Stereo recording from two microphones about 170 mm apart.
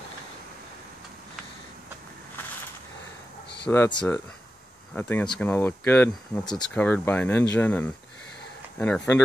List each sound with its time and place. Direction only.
3.6 s speech: 10° left (ahead or behind)
6.4 s speech: 25° left (ahead or behind)
6.7 s speech: 10° left (ahead or behind)